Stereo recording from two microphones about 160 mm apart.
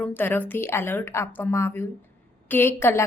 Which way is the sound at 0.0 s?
10° left (ahead or behind).